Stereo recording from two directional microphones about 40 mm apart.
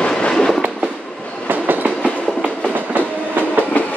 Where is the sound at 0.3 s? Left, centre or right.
Centre.